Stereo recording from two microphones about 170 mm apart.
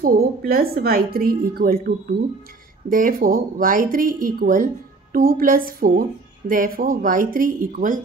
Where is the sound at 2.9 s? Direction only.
55° right (ahead or behind).